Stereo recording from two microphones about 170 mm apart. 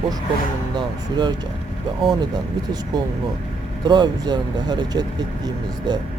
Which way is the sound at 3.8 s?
25° right (ahead or behind).